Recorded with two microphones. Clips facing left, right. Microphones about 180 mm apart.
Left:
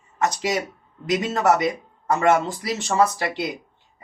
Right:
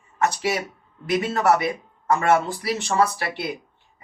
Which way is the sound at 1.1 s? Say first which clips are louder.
Even; 20° left (ahead or behind).